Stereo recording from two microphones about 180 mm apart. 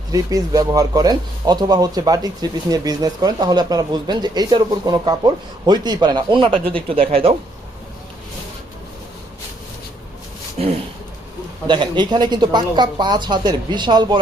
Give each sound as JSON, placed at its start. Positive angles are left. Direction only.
{"t": 0.1, "sound": "speech", "side_deg": -20}
{"t": 10.6, "sound": "speech", "side_deg": -40}
{"t": 11.7, "sound": "speech", "side_deg": -25}